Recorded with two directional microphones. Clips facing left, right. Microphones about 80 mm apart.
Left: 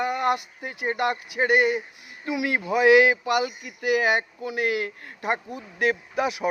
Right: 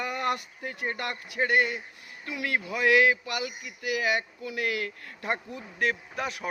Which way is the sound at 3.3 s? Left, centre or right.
Left.